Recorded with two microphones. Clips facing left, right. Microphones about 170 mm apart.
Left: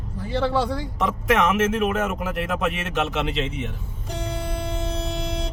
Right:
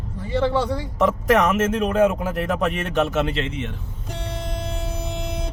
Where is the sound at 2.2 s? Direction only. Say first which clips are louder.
Right 2 dB; 40° right (ahead or behind).